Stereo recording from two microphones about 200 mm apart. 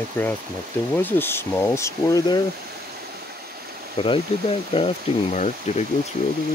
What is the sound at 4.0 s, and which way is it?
Speech, 25° left (ahead or behind).